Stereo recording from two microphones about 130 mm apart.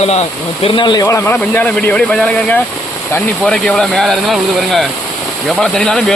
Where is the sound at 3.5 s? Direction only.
5° left (ahead or behind).